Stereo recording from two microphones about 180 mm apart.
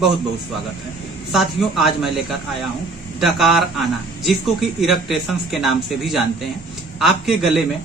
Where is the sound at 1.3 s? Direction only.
Centre (ahead or behind).